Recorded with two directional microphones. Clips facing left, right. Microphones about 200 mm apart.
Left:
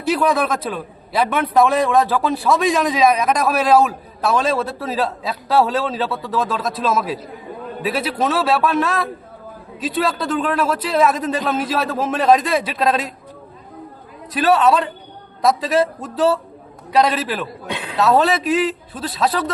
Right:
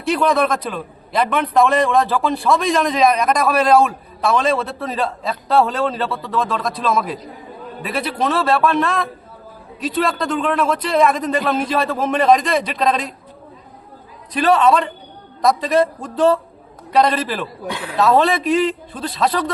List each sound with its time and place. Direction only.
0.0 s a man's voice: 5° left (ahead or behind)
14.3 s a man's voice: 5° left (ahead or behind)
17.7 s speech: 20° left (ahead or behind)
18.0 s a man's voice: centre (ahead or behind)